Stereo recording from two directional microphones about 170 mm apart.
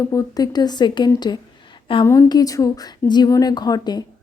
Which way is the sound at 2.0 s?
20° left (ahead or behind).